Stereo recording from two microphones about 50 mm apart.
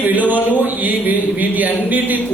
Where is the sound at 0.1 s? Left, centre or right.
Right.